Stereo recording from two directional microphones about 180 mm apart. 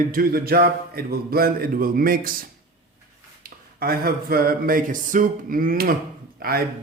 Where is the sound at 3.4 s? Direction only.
55° right (ahead or behind).